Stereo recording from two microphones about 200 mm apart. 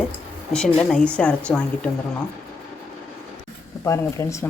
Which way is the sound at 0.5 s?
5° left (ahead or behind).